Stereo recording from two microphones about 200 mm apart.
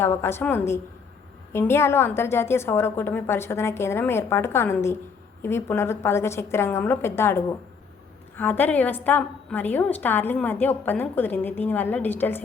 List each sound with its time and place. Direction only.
0.0 s a woman's voice: 10° left (ahead or behind)